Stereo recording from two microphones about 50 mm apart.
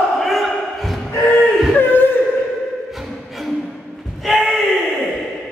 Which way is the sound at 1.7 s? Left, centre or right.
Left.